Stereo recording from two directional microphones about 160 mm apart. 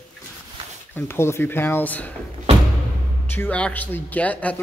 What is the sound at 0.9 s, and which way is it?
Speech, 15° left (ahead or behind).